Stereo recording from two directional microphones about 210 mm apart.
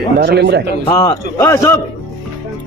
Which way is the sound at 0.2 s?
50° right (ahead or behind).